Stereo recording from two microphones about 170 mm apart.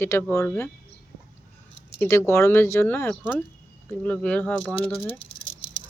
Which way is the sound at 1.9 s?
15° left (ahead or behind).